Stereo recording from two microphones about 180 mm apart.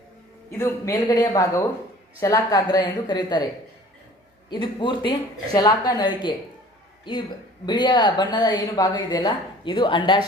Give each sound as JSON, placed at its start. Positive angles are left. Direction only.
{"t": 0.6, "sound": "a man's voice", "side_deg": 15}
{"t": 7.6, "sound": "speech", "side_deg": 25}